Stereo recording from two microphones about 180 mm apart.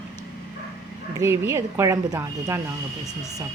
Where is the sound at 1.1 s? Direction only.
15° right (ahead or behind).